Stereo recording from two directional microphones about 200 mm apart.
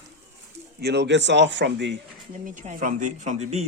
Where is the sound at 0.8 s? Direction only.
55° right (ahead or behind).